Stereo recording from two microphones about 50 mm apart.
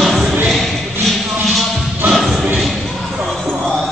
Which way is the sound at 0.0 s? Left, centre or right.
Centre.